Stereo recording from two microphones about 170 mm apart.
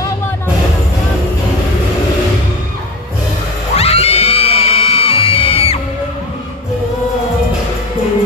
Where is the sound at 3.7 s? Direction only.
35° left (ahead or behind).